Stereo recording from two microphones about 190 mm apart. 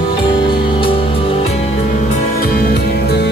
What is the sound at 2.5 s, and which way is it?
Music, 55° left (ahead or behind).